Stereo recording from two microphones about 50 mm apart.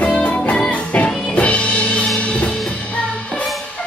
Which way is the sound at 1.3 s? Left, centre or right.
Left.